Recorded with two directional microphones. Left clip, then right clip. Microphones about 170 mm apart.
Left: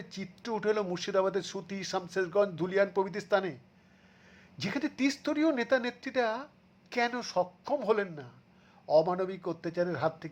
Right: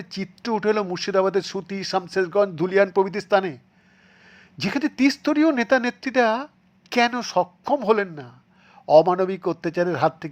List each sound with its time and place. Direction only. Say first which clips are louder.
0.0 s speech: right 10 dB; 30° right (ahead or behind)